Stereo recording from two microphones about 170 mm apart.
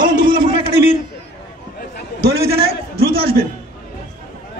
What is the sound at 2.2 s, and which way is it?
Speech, 70° right (ahead or behind).